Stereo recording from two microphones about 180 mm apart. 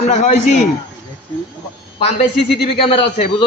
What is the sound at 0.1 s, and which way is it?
Speech, 40° left (ahead or behind).